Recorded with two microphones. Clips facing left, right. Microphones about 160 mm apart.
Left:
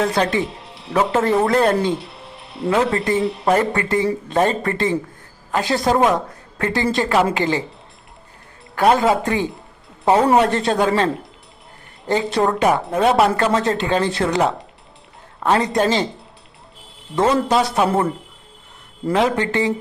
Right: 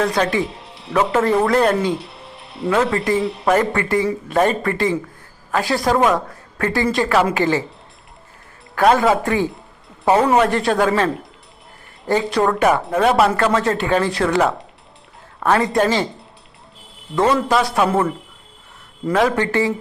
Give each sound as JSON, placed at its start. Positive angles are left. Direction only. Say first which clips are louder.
{"t": 0.0, "sound": "a woman's voice", "louder": "even", "side_deg": 30}
{"t": 0.4, "sound": "speech", "louder": "even", "side_deg": 0}
{"t": 1.5, "sound": "a woman's voice", "louder": "even", "side_deg": 30}
{"t": 1.9, "sound": "speech", "louder": "even", "side_deg": 0}
{"t": 3.5, "sound": "a woman's voice", "louder": "right 1 dB", "side_deg": 25}
{"t": 8.7, "sound": "a woman's voice", "louder": "right 1 dB", "side_deg": 20}
{"t": 10.0, "sound": "a woman's voice", "louder": "even", "side_deg": 0}
{"t": 10.3, "sound": "a woman's voice", "louder": "even", "side_deg": 25}
{"t": 12.5, "sound": "a woman's voice", "louder": "right 1 dB", "side_deg": 20}
{"t": 13.5, "sound": "speech", "louder": "even", "side_deg": 35}
{"t": 13.7, "sound": "a woman's voice", "louder": "right 1 dB", "side_deg": 25}
{"t": 17.2, "sound": "a woman's voice", "louder": "even", "side_deg": 25}
{"t": 19.1, "sound": "a woman's voice", "louder": "right 1 dB", "side_deg": 20}